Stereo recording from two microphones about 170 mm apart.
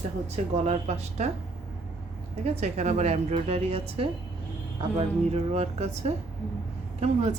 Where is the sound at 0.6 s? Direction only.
40° right (ahead or behind).